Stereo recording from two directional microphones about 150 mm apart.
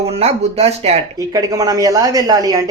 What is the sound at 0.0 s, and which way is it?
Speech, 45° right (ahead or behind).